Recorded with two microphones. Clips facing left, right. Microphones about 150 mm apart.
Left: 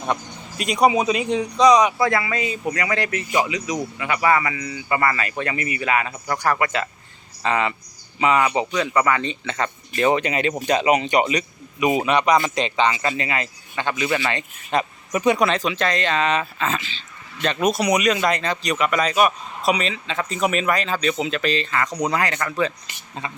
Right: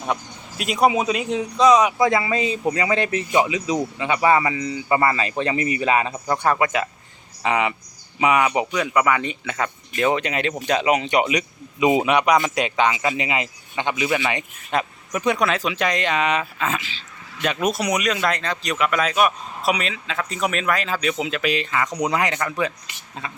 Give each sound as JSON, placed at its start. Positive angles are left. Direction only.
{"t": 0.1, "sound": "speech", "side_deg": -5}
{"t": 2.0, "sound": "speech", "side_deg": -20}
{"t": 11.8, "sound": "speech", "side_deg": -20}
{"t": 13.1, "sound": "speech", "side_deg": -20}
{"t": 14.7, "sound": "speech", "side_deg": 0}